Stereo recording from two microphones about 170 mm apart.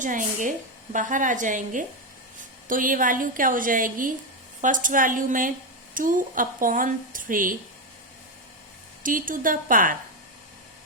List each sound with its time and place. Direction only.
0.0 s speech: 50° right (ahead or behind)
9.0 s speech: 55° right (ahead or behind)